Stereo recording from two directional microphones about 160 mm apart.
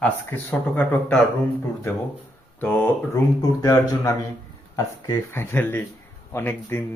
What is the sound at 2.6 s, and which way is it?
Speech, 10° left (ahead or behind).